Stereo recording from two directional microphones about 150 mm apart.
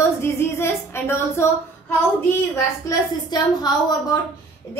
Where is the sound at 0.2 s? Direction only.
15° left (ahead or behind).